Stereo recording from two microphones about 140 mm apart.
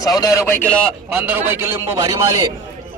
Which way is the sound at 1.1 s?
10° right (ahead or behind).